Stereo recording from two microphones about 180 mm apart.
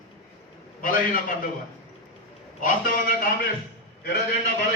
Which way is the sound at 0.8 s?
50° left (ahead or behind).